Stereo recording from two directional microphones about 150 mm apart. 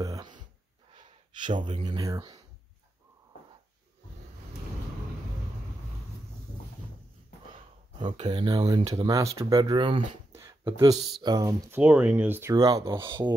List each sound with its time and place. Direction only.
0.0 s a sound: 25° right (ahead or behind)
0.9 s speech: 30° right (ahead or behind)
8.0 s speech: 30° right (ahead or behind)
11.7 s speech: 10° right (ahead or behind)